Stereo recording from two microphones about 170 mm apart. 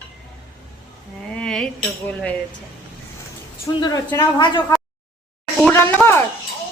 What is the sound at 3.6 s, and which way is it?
A woman's voice, 20° left (ahead or behind).